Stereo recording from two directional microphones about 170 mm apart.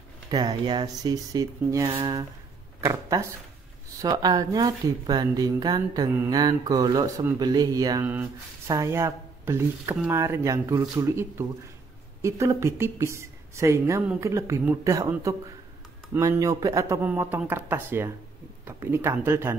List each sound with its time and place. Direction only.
0.3 s speech: 25° right (ahead or behind)
8.0 s a woman's voice: 10° right (ahead or behind)